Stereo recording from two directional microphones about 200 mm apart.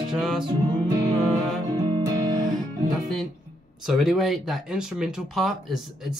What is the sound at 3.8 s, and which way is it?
Speech, centre (ahead or behind).